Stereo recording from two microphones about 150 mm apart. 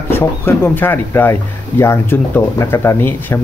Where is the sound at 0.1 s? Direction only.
15° left (ahead or behind).